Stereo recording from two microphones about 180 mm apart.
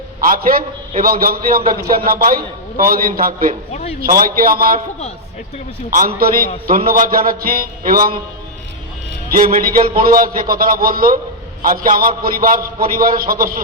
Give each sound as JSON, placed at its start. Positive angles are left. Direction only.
{"t": 0.2, "sound": "a man's voice", "side_deg": -50}
{"t": 6.7, "sound": "a man's voice", "side_deg": -50}
{"t": 9.3, "sound": "a man's voice", "side_deg": -50}